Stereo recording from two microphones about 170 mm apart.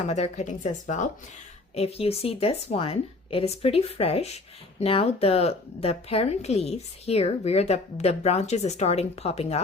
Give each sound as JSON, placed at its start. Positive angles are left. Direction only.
{"t": 0.0, "sound": "speech", "side_deg": 40}
{"t": 1.7, "sound": "speech", "side_deg": 35}